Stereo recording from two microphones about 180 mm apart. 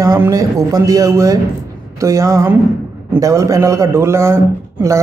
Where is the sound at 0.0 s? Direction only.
20° right (ahead or behind).